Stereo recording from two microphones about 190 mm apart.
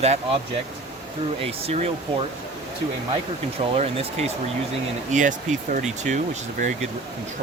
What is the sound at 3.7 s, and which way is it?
Speech, 35° right (ahead or behind).